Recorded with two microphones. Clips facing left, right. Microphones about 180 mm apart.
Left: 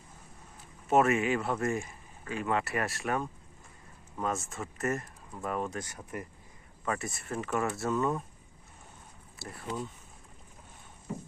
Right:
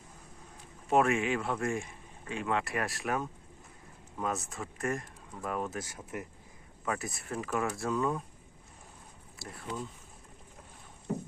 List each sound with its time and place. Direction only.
0.9 s speech: centre (ahead or behind)
9.4 s speech: centre (ahead or behind)
11.1 s rowboat: 55° right (ahead or behind)